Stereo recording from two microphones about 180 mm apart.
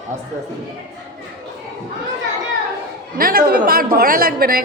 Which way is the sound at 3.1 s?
55° right (ahead or behind).